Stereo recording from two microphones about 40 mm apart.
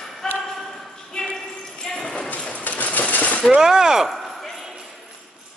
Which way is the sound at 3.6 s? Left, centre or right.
Centre.